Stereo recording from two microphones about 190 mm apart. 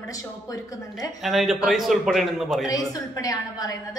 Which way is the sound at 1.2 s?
Centre (ahead or behind).